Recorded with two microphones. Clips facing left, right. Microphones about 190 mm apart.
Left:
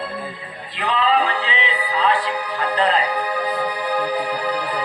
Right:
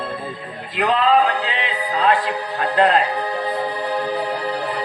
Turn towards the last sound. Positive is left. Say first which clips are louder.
# even
turn(degrees=-25)  # may be behind; listen again after turning